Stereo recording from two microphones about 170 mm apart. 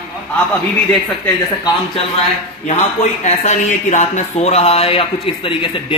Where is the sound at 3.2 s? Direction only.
45° left (ahead or behind).